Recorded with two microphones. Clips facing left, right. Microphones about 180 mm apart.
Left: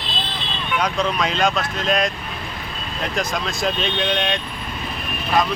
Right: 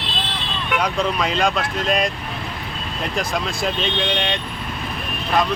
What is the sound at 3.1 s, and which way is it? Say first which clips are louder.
Speech: right 1 dB; 5° right (ahead or behind).